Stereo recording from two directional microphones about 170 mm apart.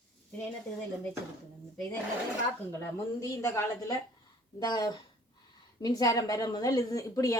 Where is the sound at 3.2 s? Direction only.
15° left (ahead or behind).